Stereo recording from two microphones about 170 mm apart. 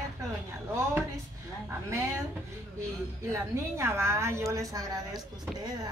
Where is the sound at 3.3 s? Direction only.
15° right (ahead or behind).